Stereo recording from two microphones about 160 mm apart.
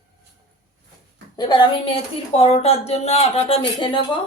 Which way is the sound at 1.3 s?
25° left (ahead or behind).